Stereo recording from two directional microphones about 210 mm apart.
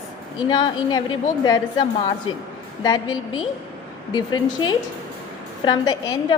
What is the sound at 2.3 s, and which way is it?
Speech, 75° left (ahead or behind).